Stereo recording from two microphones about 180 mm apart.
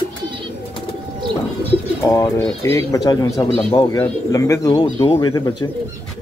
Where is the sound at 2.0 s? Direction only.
15° left (ahead or behind).